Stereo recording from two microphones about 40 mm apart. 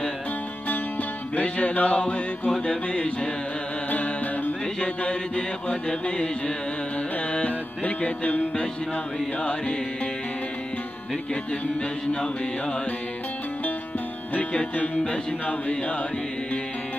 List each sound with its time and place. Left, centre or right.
1.3 s music: left
2.6 s mantra: left
4.7 s mantra: left
7.3 s music: left
9.4 s mantra: left
14.5 s mantra: left